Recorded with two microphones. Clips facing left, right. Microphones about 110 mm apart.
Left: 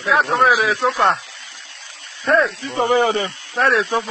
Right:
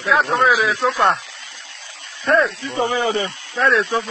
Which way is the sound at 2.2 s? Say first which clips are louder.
Even; centre (ahead or behind).